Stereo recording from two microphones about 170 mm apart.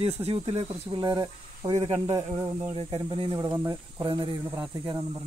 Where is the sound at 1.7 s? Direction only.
40° right (ahead or behind).